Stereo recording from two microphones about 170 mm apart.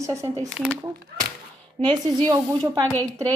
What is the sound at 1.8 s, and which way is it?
Speech, 25° right (ahead or behind).